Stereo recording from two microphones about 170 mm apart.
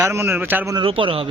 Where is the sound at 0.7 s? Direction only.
30° right (ahead or behind).